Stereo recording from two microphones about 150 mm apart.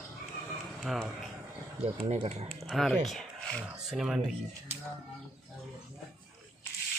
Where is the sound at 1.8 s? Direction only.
35° right (ahead or behind).